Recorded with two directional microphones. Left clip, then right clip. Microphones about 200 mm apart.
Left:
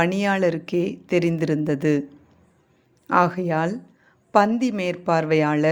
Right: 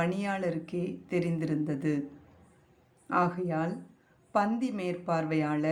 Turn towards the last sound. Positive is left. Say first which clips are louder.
# left 11 dB
turn(degrees=40)  # may be behind; listen again after turning